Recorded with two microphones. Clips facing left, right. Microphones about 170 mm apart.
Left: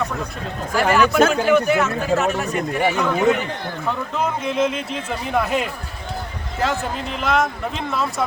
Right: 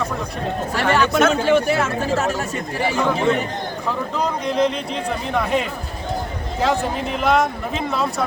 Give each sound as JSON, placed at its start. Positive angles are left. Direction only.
{"t": 0.7, "sound": "speech", "side_deg": -30}
{"t": 3.8, "sound": "speech", "side_deg": 5}